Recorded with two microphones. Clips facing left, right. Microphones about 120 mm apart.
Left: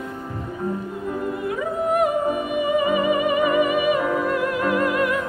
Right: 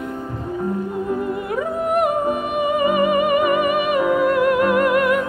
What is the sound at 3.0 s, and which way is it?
Music, 65° right (ahead or behind).